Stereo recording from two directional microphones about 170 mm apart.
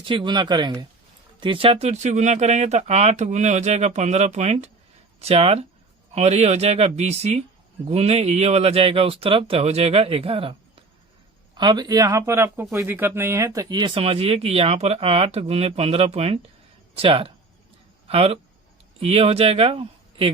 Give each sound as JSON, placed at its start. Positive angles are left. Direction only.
{"t": 0.0, "sound": "speech", "side_deg": -30}
{"t": 11.5, "sound": "speech", "side_deg": -25}